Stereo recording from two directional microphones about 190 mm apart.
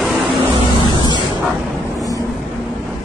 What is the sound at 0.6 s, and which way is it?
Vehicle, 25° right (ahead or behind).